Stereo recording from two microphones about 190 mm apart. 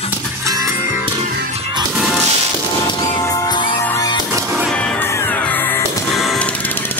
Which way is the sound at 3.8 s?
10° left (ahead or behind).